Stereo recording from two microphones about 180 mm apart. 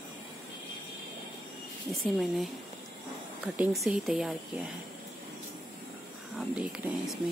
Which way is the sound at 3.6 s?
Centre (ahead or behind).